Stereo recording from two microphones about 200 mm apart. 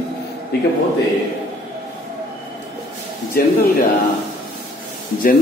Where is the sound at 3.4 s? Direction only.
45° left (ahead or behind).